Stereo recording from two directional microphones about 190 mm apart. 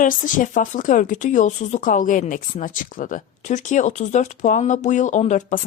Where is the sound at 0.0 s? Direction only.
45° left (ahead or behind).